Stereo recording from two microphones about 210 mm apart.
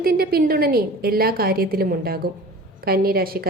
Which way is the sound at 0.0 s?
45° right (ahead or behind).